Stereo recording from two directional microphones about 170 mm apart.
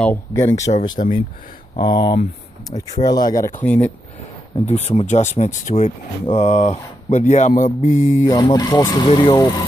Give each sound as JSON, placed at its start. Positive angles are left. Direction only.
{"t": 0.3, "sound": "speech", "side_deg": 15}
{"t": 1.0, "sound": "speech", "side_deg": 45}
{"t": 1.8, "sound": "speech", "side_deg": 25}
{"t": 3.6, "sound": "speech", "side_deg": 10}
{"t": 4.6, "sound": "speech", "side_deg": 35}
{"t": 8.4, "sound": "speech", "side_deg": 20}